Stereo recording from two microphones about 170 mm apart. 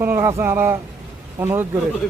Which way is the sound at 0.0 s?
15° right (ahead or behind).